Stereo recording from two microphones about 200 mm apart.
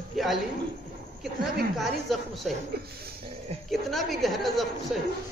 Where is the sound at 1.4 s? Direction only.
Centre (ahead or behind).